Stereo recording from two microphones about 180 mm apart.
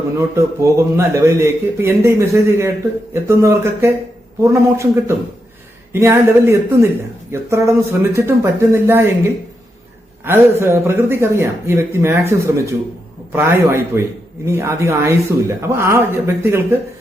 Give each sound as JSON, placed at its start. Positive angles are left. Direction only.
{"t": 0.2, "sound": "speech", "side_deg": -15}
{"t": 10.2, "sound": "speech", "side_deg": -15}